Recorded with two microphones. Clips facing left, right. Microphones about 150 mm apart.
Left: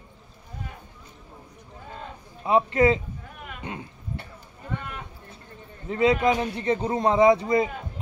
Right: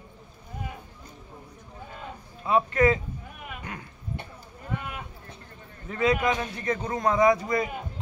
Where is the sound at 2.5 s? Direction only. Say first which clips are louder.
Left 2 dB; 25° left (ahead or behind).